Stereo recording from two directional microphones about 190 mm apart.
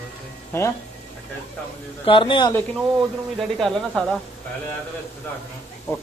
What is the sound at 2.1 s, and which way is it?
Speech, 25° left (ahead or behind).